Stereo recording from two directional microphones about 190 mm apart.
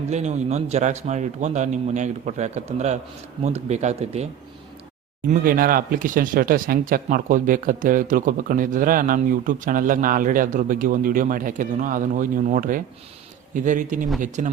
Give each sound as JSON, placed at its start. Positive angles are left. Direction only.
{"t": 0.1, "sound": "a man's voice", "side_deg": -35}
{"t": 5.2, "sound": "a man's voice", "side_deg": -45}